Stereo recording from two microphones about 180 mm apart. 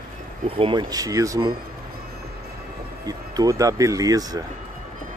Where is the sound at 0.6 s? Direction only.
25° right (ahead or behind).